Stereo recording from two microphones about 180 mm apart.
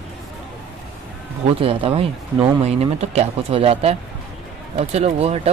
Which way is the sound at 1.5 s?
30° right (ahead or behind).